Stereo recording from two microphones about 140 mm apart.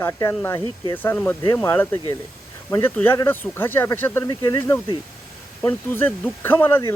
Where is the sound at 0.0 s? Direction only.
20° left (ahead or behind).